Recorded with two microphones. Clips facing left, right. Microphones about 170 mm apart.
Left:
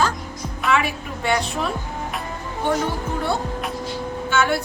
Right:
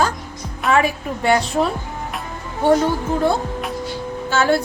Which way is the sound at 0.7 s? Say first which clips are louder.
Right 4 dB; 40° right (ahead or behind).